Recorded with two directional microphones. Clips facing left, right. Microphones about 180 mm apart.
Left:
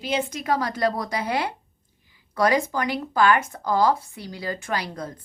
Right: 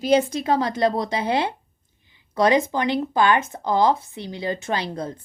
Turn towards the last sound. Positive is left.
turn(degrees=-25)  # may be behind; listen again after turning